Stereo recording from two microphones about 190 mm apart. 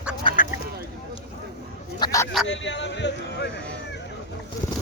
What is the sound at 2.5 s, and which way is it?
Speech, 70° left (ahead or behind).